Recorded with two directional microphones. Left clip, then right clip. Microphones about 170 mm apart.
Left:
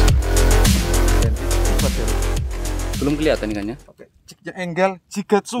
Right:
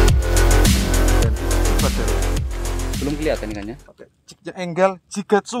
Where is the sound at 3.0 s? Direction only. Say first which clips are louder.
Left 4 dB; 60° left (ahead or behind).